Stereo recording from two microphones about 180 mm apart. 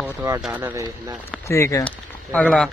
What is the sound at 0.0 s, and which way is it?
Speech, 10° right (ahead or behind).